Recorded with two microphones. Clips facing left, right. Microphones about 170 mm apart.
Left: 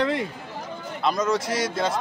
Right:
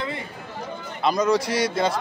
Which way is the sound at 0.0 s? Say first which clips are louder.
Left 7 dB; 75° left (ahead or behind).